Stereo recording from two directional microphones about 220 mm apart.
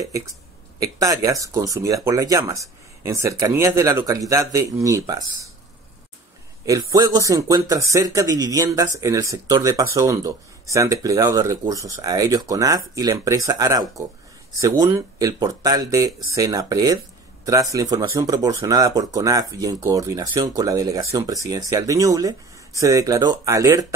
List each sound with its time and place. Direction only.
0.7 s speech: 15° right (ahead or behind)
6.6 s speech: 15° right (ahead or behind)